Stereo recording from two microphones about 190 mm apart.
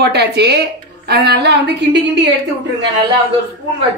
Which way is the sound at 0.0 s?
60° right (ahead or behind).